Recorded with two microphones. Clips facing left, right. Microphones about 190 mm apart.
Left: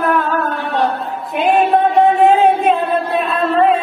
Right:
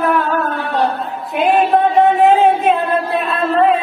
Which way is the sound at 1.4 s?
Centre (ahead or behind).